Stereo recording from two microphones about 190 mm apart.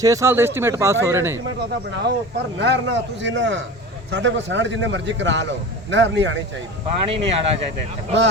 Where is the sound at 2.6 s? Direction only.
65° right (ahead or behind).